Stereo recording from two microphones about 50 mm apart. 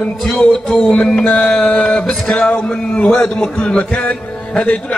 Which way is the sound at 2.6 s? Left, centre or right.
Centre.